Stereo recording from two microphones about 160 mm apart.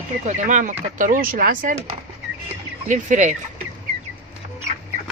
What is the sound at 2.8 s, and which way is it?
Speech, 50° right (ahead or behind).